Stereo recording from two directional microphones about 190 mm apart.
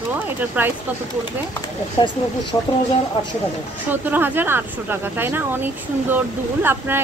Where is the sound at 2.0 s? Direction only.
25° left (ahead or behind).